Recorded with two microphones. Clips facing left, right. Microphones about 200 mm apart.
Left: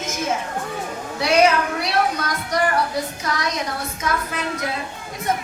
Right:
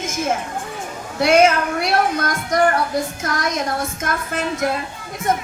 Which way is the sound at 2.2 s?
50° right (ahead or behind).